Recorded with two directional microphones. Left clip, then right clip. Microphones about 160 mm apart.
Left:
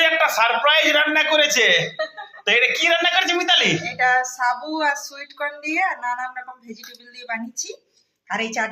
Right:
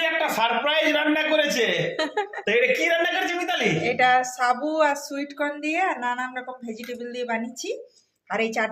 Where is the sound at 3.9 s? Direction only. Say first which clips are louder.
Left 1 dB; 35° right (ahead or behind).